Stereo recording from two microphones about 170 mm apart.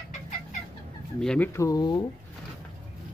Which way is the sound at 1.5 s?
20° left (ahead or behind).